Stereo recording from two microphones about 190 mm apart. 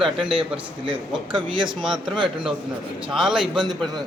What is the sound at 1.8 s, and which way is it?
Speech, centre (ahead or behind).